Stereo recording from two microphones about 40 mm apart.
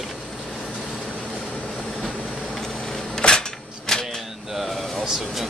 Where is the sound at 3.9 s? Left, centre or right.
Centre.